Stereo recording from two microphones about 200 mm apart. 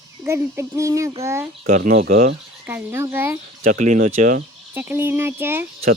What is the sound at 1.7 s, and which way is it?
Speech, 35° right (ahead or behind).